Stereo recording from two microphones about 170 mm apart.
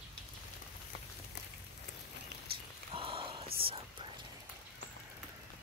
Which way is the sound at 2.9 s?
30° right (ahead or behind).